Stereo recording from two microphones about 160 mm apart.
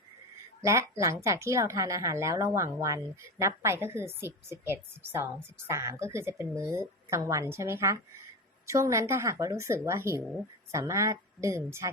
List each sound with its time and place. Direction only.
0.6 s a woman's voice: 20° right (ahead or behind)